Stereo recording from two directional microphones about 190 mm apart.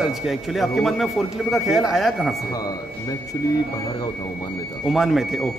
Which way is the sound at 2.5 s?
20° left (ahead or behind).